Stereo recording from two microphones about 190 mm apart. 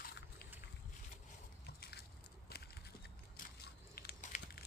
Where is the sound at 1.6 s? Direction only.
55° left (ahead or behind).